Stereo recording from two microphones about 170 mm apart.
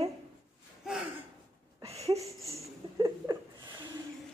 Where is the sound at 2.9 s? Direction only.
15° right (ahead or behind).